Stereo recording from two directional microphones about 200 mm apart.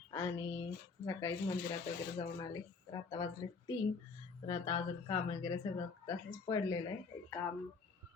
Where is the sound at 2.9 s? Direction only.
20° left (ahead or behind).